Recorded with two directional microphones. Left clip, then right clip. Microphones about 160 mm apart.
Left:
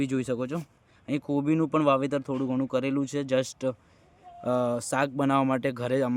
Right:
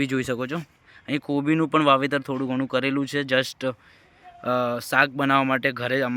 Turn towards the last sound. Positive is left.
turn(degrees=20)  # may be behind; listen again after turning